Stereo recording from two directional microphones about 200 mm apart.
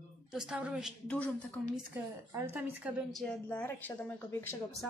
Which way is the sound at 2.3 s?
10° right (ahead or behind).